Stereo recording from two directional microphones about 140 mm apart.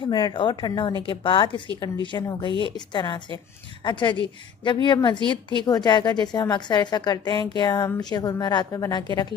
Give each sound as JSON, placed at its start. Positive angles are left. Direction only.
{"t": 0.0, "sound": "a woman's voice", "side_deg": 30}